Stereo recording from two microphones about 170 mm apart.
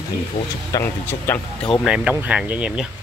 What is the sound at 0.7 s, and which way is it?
Speech, 15° left (ahead or behind).